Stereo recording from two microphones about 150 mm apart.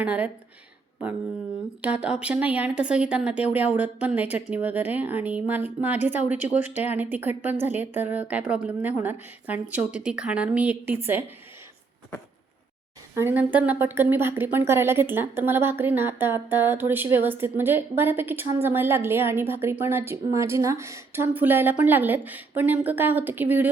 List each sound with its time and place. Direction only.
0.0 s a woman's voice: 10° right (ahead or behind)
1.8 s a woman's voice: 5° right (ahead or behind)
6.7 s speech: 50° left (ahead or behind)
6.9 s a woman's voice: 10° right (ahead or behind)
13.1 s a woman's voice: 15° right (ahead or behind)